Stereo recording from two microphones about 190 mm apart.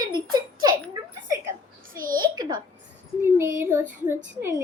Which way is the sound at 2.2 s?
20° right (ahead or behind).